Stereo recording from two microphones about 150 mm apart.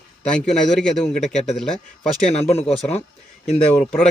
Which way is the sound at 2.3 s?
45° left (ahead or behind).